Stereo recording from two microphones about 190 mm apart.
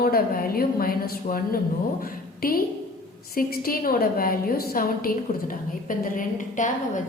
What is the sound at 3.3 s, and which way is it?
A woman's voice, 50° left (ahead or behind).